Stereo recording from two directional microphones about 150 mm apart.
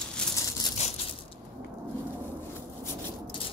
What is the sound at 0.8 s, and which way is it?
Crushing, 50° left (ahead or behind).